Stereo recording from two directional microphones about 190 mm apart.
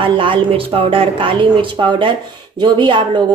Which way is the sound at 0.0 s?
25° right (ahead or behind).